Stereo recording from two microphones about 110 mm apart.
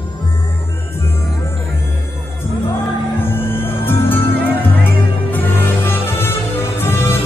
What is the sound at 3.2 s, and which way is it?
Music, 20° left (ahead or behind).